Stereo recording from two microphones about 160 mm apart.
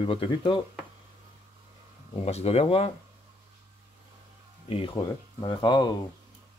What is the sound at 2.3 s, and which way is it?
Speech, 40° left (ahead or behind).